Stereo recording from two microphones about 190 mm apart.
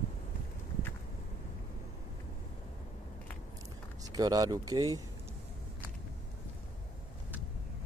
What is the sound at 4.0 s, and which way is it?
Speech, 20° right (ahead or behind).